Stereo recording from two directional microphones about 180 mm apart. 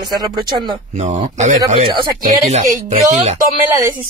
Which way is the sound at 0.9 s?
40° right (ahead or behind).